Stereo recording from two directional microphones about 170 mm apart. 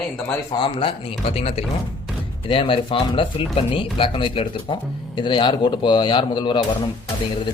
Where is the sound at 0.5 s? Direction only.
30° left (ahead or behind).